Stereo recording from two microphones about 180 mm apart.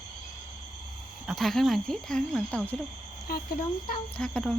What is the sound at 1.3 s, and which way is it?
Speech, centre (ahead or behind).